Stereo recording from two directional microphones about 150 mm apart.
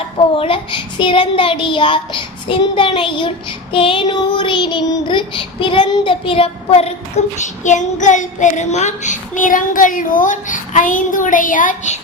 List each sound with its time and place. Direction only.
0.3 s a child's voice: 35° left (ahead or behind)
7.3 s child singing: 55° left (ahead or behind)